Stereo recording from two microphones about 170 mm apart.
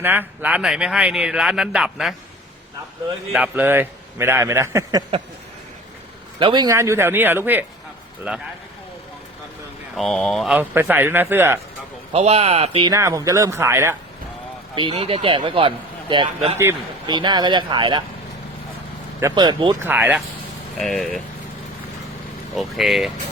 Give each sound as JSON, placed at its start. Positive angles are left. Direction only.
{"t": 0.0, "sound": "speech", "side_deg": -10}
{"t": 3.3, "sound": "a man's voice", "side_deg": -10}
{"t": 6.4, "sound": "a man's voice", "side_deg": -25}
{"t": 9.9, "sound": "a man's voice", "side_deg": 0}
{"t": 12.1, "sound": "a man's voice", "side_deg": -40}
{"t": 12.9, "sound": "a man's voice", "side_deg": -20}
{"t": 14.8, "sound": "a man's voice", "side_deg": -30}
{"t": 19.3, "sound": "speech", "side_deg": -25}
{"t": 19.8, "sound": "a man's voice", "side_deg": -10}
{"t": 20.7, "sound": "speech", "side_deg": 0}
{"t": 22.5, "sound": "speech", "side_deg": 0}